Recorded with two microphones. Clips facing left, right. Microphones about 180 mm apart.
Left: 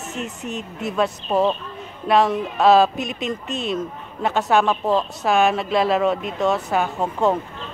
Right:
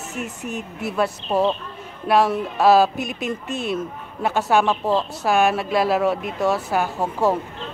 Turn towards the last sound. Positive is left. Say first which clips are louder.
# even
turn(degrees=-5)  # may be behind; listen again after turning